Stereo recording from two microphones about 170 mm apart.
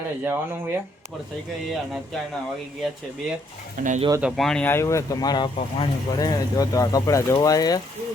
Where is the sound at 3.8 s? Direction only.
55° right (ahead or behind).